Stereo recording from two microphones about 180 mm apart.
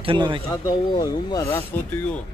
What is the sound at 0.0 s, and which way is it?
Speech, 30° right (ahead or behind).